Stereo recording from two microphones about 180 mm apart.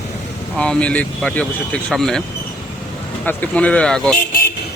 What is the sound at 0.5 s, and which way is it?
Speech, 5° left (ahead or behind).